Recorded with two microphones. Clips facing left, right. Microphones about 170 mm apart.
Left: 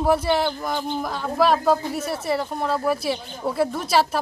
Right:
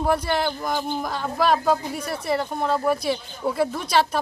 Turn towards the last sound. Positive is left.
turn(degrees=5)  # may be behind; listen again after turning